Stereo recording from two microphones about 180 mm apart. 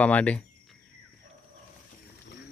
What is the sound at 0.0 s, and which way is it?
Speech, 10° left (ahead or behind).